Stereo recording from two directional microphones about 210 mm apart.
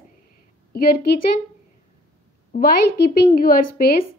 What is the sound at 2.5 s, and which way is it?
Speech, 40° left (ahead or behind).